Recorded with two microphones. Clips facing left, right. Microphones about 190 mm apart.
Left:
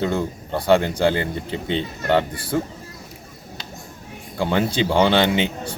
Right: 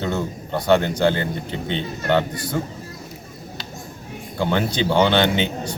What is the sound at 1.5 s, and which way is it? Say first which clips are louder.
Speech: left 5 dB; 35° left (ahead or behind).